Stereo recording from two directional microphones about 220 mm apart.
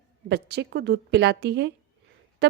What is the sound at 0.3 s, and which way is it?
A woman's voice, 50° right (ahead or behind).